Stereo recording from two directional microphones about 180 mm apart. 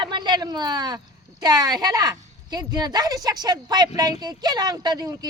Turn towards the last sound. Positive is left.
turn(degrees=-20)  # may be behind; listen again after turning